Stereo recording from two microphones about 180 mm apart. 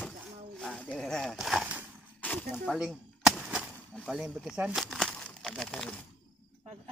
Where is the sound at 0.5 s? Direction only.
5° left (ahead or behind).